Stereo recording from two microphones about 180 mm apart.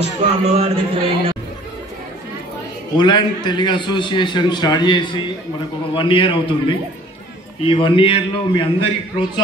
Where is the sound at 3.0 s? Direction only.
25° left (ahead or behind).